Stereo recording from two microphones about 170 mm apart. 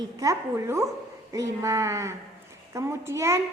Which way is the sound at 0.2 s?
15° right (ahead or behind).